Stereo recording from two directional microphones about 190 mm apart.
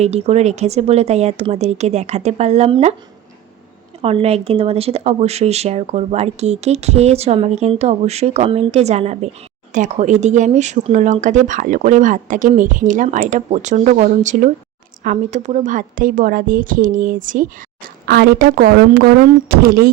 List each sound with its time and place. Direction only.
0.0 s speech: 35° right (ahead or behind)
4.0 s a woman's voice: 30° right (ahead or behind)
18.0 s speech: 55° right (ahead or behind)